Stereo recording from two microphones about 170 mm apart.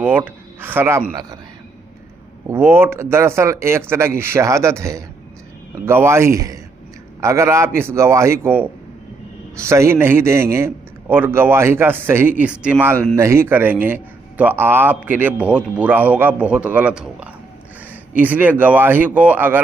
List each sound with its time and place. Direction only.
0.0 s a man's voice: 10° right (ahead or behind)
2.4 s a man's voice: 15° right (ahead or behind)